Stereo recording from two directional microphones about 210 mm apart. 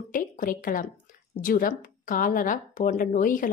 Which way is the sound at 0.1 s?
40° left (ahead or behind).